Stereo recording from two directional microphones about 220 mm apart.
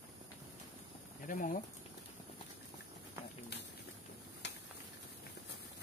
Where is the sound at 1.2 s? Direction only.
35° left (ahead or behind).